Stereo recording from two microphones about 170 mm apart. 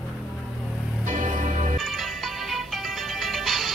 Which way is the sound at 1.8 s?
Centre (ahead or behind).